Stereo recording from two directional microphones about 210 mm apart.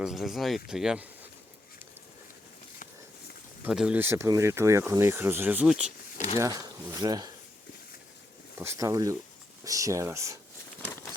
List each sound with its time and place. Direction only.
0.0 s speech: centre (ahead or behind)
3.6 s speech: 5° right (ahead or behind)
6.3 s speech: 15° right (ahead or behind)
8.5 s speech: 10° right (ahead or behind)